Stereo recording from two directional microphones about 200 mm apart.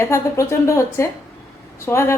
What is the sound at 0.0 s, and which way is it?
A woman's voice, 15° left (ahead or behind).